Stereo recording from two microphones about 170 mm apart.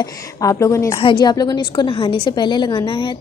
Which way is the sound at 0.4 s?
20° left (ahead or behind).